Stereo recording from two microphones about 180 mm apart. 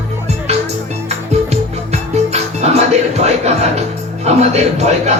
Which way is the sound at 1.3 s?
40° right (ahead or behind).